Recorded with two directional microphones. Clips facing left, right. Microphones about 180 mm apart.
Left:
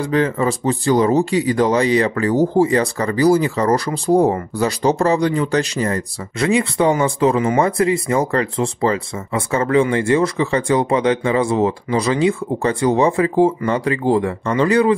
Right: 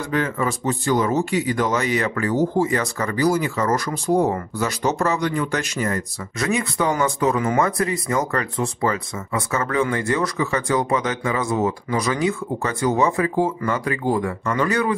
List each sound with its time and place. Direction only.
0.0 s speech: 30° left (ahead or behind)